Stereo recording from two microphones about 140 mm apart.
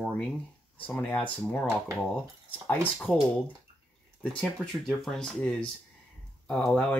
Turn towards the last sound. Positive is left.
turn(degrees=5)  # may be behind; listen again after turning